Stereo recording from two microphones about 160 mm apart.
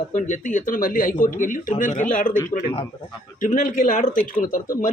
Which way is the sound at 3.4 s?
55° left (ahead or behind).